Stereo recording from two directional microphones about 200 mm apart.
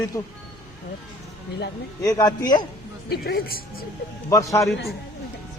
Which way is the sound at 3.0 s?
50° left (ahead or behind).